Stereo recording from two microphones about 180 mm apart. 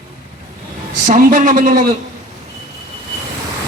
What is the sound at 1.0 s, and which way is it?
Speech, 45° right (ahead or behind).